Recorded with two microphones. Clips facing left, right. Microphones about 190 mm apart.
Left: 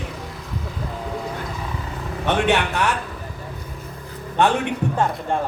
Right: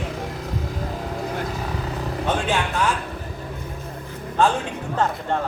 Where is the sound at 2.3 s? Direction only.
70° left (ahead or behind).